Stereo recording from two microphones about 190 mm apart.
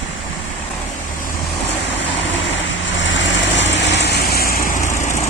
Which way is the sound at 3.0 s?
75° left (ahead or behind).